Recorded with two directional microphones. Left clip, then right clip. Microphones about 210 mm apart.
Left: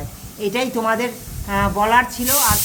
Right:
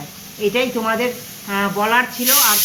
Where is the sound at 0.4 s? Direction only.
65° left (ahead or behind).